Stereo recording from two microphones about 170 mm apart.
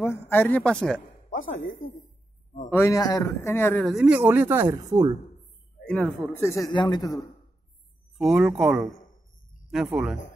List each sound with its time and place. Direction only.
0.0 s a man's voice: 15° left (ahead or behind)
2.7 s a man's voice: 15° left (ahead or behind)
3.8 s speech: 5° right (ahead or behind)
5.9 s speech: 5° left (ahead or behind)
6.4 s speech: 20° left (ahead or behind)
8.2 s speech: centre (ahead or behind)